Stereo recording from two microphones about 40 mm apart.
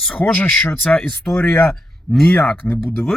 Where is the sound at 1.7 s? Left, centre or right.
Centre.